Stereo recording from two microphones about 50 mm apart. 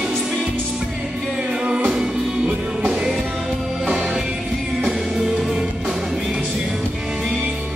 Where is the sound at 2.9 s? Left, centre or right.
Centre.